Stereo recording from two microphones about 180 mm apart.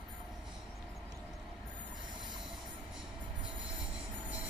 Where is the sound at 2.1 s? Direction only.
25° right (ahead or behind).